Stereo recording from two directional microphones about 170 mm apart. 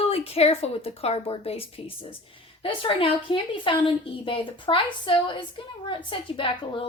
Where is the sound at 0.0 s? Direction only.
35° left (ahead or behind).